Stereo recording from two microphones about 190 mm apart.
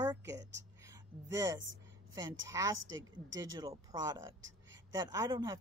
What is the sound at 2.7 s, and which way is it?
Speech, 90° right.